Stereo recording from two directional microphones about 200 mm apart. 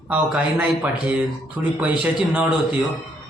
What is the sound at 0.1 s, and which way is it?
Speech, 5° right (ahead or behind).